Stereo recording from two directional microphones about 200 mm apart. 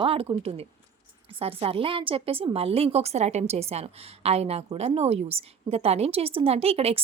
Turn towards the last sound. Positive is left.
turn(degrees=-30)  # may be behind; listen again after turning